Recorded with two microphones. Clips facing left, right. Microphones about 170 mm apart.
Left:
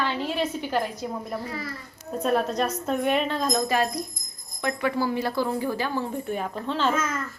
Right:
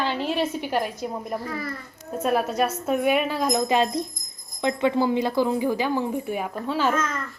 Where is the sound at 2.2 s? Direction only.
5° right (ahead or behind).